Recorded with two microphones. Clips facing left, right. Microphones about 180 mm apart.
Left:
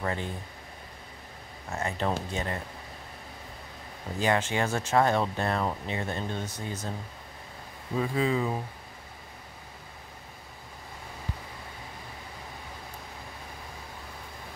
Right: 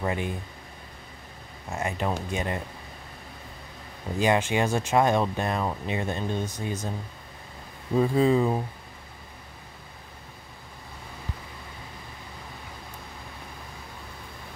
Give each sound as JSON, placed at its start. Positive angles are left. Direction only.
{"t": 0.0, "sound": "speech", "side_deg": -15}
{"t": 1.7, "sound": "speech", "side_deg": -15}
{"t": 4.2, "sound": "speech", "side_deg": -15}
{"t": 8.0, "sound": "speech", "side_deg": -35}